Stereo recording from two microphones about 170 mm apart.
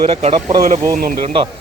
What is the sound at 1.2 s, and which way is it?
Speech, 35° right (ahead or behind).